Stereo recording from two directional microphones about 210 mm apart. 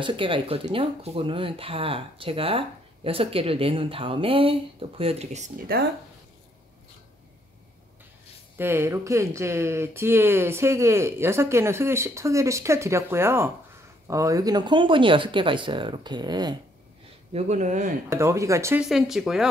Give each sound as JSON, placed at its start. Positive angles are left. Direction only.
{"t": 0.0, "sound": "speech", "side_deg": -25}
{"t": 8.5, "sound": "speech", "side_deg": -10}
{"t": 17.3, "sound": "speech", "side_deg": -30}
{"t": 18.1, "sound": "speech", "side_deg": -15}
{"t": 18.9, "sound": "speech", "side_deg": 0}